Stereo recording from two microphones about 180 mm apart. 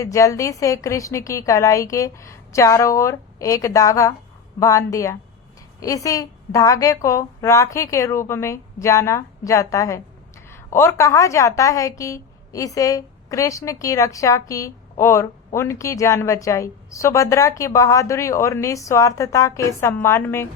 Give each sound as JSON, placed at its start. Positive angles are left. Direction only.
{"t": 0.0, "sound": "a woman's voice", "side_deg": 15}